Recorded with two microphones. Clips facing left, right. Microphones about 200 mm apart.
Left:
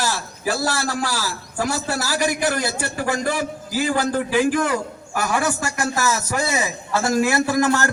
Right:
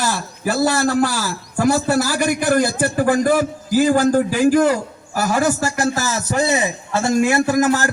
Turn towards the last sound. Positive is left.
turn(degrees=-20)  # may be behind; listen again after turning